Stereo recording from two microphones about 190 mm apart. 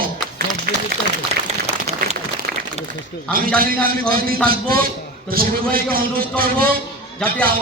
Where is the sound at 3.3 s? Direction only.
50° right (ahead or behind).